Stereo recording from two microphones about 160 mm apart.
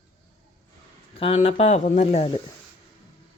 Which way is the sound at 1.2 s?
40° left (ahead or behind).